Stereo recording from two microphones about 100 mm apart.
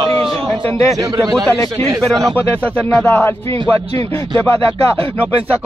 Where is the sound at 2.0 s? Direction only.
5° left (ahead or behind).